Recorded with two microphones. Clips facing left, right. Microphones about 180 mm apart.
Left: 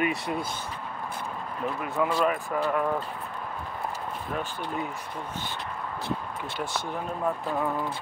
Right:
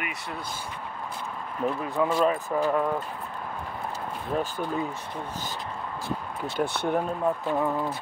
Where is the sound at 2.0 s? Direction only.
25° right (ahead or behind).